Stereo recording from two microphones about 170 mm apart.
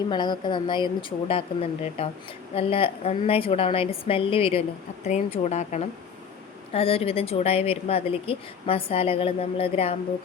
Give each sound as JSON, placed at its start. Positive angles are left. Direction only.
{"t": 0.1, "sound": "a woman's voice", "side_deg": 25}